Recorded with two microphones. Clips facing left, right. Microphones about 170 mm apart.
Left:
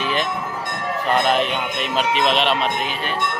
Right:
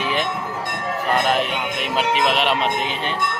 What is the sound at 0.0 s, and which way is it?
Train, 15° right (ahead or behind).